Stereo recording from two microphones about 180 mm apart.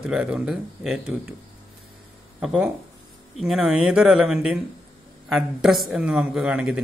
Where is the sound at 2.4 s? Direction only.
Centre (ahead or behind).